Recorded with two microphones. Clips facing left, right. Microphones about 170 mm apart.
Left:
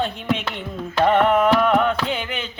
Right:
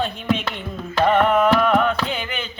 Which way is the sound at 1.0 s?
20° left (ahead or behind).